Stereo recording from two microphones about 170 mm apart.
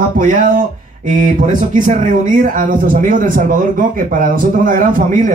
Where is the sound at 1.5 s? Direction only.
50° right (ahead or behind).